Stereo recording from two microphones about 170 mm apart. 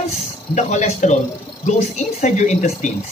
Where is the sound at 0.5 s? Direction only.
45° left (ahead or behind).